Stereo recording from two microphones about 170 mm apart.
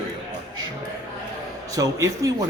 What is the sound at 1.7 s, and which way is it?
Speech, 20° right (ahead or behind).